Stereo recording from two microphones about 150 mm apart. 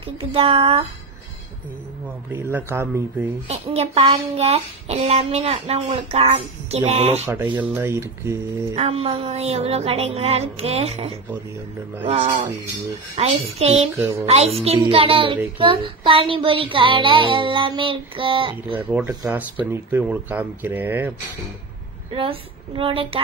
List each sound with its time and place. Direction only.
0.2 s child singing: 40° right (ahead or behind)
2.3 s speech: 15° right (ahead or behind)
3.4 s a sound: 45° right (ahead or behind)
7.5 s speech: 15° right (ahead or behind)
8.7 s a sound: 40° right (ahead or behind)
13.9 s speech: 20° right (ahead or behind)
14.2 s a sound: 45° right (ahead or behind)
14.8 s child singing: 35° right (ahead or behind)
18.8 s speech: 10° right (ahead or behind)
22.1 s child singing: 35° right (ahead or behind)